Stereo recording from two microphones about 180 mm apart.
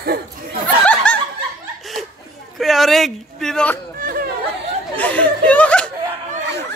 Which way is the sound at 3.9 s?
50° right (ahead or behind).